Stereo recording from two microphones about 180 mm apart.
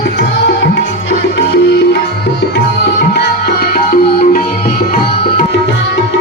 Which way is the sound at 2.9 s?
65° left (ahead or behind).